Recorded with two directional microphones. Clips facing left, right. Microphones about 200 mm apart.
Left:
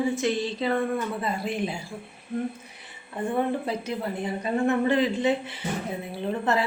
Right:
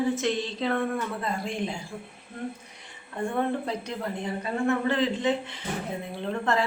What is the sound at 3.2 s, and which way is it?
A woman's voice, 10° left (ahead or behind).